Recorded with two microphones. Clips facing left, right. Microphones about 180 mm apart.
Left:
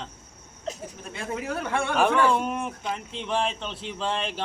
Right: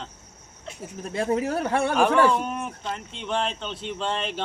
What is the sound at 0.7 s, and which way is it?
Speech, 40° left (ahead or behind).